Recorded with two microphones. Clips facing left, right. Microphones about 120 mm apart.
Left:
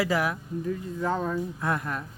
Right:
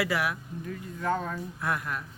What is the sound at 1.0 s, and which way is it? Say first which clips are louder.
Speech: left 1 dB; 10° left (ahead or behind).